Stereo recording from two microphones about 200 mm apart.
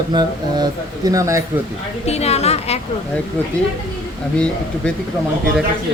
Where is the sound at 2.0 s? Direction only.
30° left (ahead or behind).